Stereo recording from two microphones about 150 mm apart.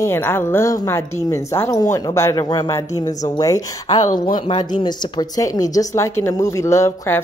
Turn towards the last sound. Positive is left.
turn(degrees=15)  # may be behind; listen again after turning